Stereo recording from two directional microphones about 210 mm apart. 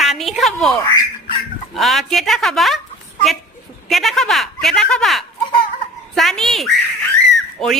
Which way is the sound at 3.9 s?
Centre (ahead or behind).